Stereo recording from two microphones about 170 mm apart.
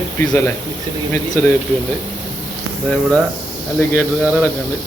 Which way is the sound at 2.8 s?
5° left (ahead or behind).